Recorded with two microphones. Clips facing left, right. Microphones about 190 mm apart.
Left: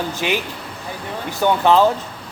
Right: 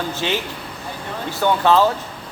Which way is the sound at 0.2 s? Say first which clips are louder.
Left 1 dB; 15° left (ahead or behind).